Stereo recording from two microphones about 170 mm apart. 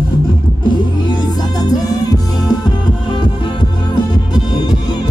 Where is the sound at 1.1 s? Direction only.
20° left (ahead or behind).